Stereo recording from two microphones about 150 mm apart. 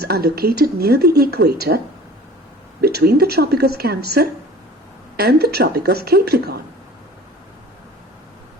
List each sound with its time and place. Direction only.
0.0 s speech: 90° right
2.8 s speech: 90° right